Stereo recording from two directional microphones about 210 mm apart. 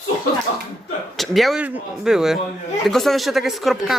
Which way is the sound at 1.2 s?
Centre (ahead or behind).